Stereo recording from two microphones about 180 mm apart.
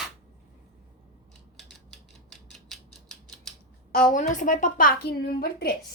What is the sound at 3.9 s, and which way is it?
Speech, 55° left (ahead or behind).